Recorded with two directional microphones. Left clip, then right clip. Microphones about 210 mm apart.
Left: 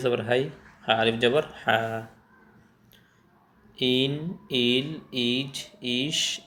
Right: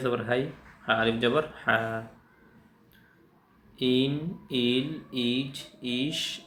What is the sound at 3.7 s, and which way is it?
Speech, 15° left (ahead or behind).